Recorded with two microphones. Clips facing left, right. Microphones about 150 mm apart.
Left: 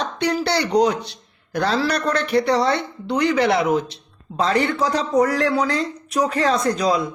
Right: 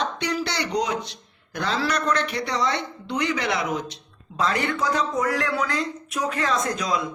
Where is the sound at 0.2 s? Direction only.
35° left (ahead or behind).